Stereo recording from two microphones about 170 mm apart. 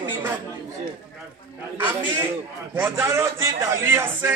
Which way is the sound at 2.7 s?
15° right (ahead or behind).